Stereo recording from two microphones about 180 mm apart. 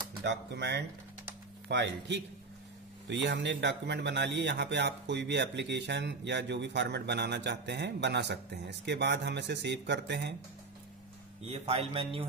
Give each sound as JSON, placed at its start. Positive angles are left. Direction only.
{"t": 0.2, "sound": "speech", "side_deg": -75}
{"t": 11.4, "sound": "a man's voice", "side_deg": -35}